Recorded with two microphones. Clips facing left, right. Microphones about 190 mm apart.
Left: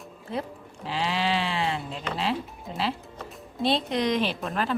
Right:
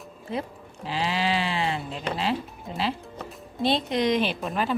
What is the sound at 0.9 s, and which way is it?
Speech, centre (ahead or behind).